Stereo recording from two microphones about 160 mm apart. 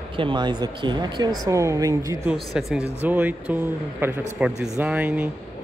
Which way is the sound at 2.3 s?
Centre (ahead or behind).